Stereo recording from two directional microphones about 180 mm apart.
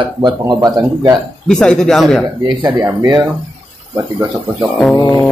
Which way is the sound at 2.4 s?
25° right (ahead or behind).